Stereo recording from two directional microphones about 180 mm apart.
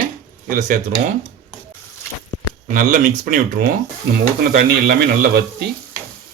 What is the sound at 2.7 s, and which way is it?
A man's voice, 50° right (ahead or behind).